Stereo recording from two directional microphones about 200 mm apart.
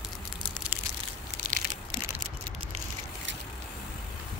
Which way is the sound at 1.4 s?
35° right (ahead or behind).